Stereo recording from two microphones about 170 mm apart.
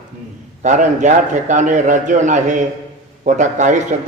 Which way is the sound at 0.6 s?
45° right (ahead or behind).